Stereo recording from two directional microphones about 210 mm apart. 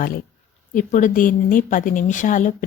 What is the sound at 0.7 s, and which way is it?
A woman's voice, 35° left (ahead or behind).